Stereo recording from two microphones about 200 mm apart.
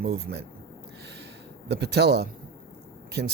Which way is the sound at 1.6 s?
55° right (ahead or behind).